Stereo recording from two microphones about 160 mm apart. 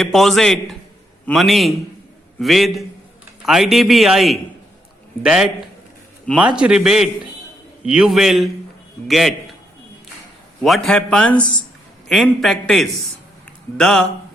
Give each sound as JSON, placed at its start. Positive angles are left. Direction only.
{"t": 0.0, "sound": "a man's voice", "side_deg": 0}
{"t": 6.6, "sound": "a man's voice", "side_deg": -5}
{"t": 10.6, "sound": "a man's voice", "side_deg": 0}